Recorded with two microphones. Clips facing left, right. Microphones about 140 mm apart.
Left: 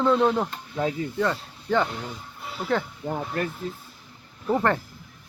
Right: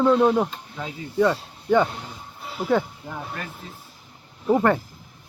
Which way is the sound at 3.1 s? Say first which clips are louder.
Left 6 dB; 45° left (ahead or behind).